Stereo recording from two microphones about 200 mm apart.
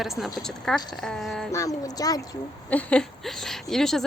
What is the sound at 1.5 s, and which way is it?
Speech, 15° left (ahead or behind).